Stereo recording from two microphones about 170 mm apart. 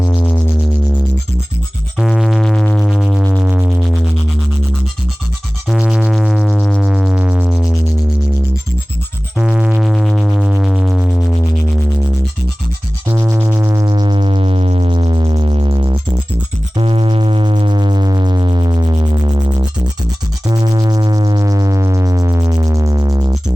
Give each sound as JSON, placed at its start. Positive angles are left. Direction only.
{"t": 0.0, "sound": "music", "side_deg": 15}
{"t": 2.0, "sound": "sine wave", "side_deg": 0}
{"t": 3.3, "sound": "music", "side_deg": -10}
{"t": 5.6, "sound": "music", "side_deg": -5}
{"t": 9.4, "sound": "music", "side_deg": -5}
{"t": 13.1, "sound": "music", "side_deg": -15}
{"t": 20.5, "sound": "sine wave", "side_deg": -20}